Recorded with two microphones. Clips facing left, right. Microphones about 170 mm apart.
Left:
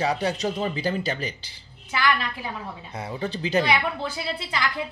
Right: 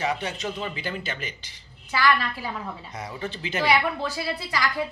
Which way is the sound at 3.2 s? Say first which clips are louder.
Left 7 dB; 35° left (ahead or behind).